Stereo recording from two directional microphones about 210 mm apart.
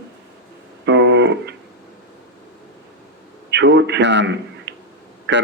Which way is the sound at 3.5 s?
55° right (ahead or behind).